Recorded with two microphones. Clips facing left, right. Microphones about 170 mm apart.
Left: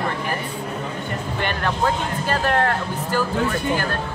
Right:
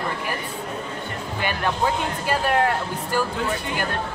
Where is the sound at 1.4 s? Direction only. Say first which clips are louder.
Even; 10° right (ahead or behind).